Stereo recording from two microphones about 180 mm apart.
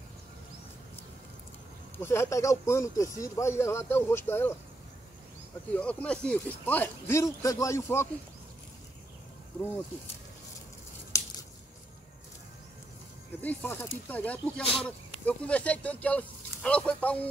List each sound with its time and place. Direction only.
2.0 s speech: 15° left (ahead or behind)
5.8 s speech: 5° left (ahead or behind)
11.1 s a sound: 15° left (ahead or behind)
13.4 s speech: 10° left (ahead or behind)
14.6 s speech: 30° left (ahead or behind)
14.9 s speech: 5° left (ahead or behind)